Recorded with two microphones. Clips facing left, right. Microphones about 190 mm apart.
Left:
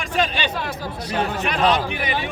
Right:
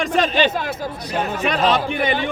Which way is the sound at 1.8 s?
50° right (ahead or behind).